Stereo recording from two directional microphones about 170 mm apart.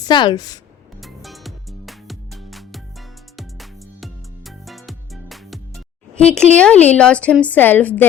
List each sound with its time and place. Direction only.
0.0 s a woman's voice: 25° left (ahead or behind)
1.0 s music: centre (ahead or behind)
6.6 s a woman's voice: 10° left (ahead or behind)